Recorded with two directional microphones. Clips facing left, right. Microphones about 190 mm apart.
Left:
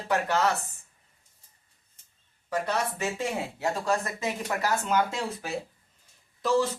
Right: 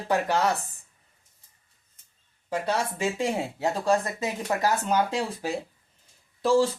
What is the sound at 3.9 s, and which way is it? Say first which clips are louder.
Speech: right 3 dB; 35° right (ahead or behind).